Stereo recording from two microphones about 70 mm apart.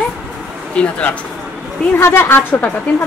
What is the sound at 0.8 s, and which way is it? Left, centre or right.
Speech, centre.